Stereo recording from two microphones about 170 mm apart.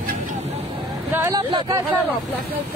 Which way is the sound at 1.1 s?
20° right (ahead or behind).